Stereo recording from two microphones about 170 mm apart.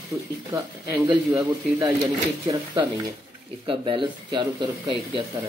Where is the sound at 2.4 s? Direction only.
25° right (ahead or behind).